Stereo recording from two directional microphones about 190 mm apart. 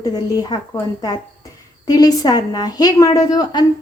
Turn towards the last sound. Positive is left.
turn(degrees=20)  # may be behind; listen again after turning